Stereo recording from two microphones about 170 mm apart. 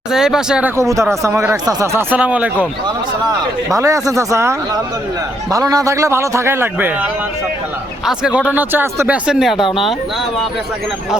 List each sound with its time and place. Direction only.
0.1 s speech: 5° right (ahead or behind)
0.8 s speech: 15° right (ahead or behind)
3.2 s speech: 20° right (ahead or behind); by 9.6 s centre (ahead or behind)